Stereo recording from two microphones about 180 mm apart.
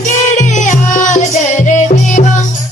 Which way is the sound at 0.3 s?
45° left (ahead or behind).